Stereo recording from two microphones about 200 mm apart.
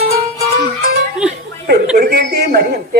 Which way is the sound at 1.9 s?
50° right (ahead or behind).